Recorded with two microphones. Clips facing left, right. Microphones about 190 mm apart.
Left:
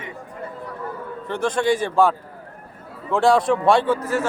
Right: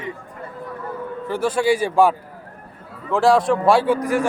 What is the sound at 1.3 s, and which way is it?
A man's voice, 5° right (ahead or behind).